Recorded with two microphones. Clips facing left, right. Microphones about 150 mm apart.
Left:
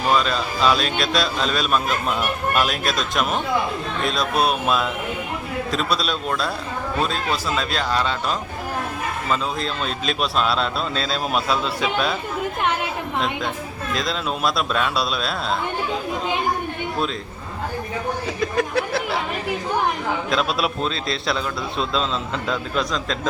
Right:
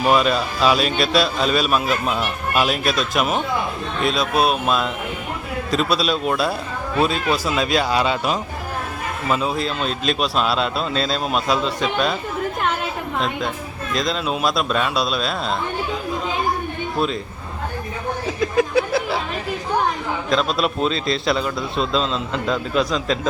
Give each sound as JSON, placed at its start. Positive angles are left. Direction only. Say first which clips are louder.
{"t": 0.1, "sound": "a man's voice", "louder": "right 2 dB", "side_deg": -10}
{"t": 13.1, "sound": "a man's voice", "louder": "right 1 dB", "side_deg": 0}
{"t": 18.3, "sound": "a sound", "louder": "right 5 dB", "side_deg": 0}
{"t": 20.3, "sound": "a man's voice", "louder": "right 4 dB", "side_deg": 0}